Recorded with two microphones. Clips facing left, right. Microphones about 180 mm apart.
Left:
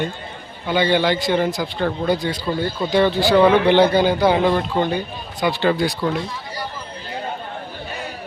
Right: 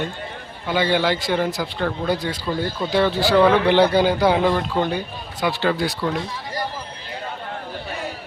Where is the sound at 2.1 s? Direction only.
5° right (ahead or behind).